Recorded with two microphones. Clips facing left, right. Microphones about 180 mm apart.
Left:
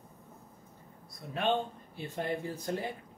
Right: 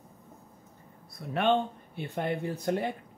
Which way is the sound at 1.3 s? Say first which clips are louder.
Right 5 dB; 65° right (ahead or behind).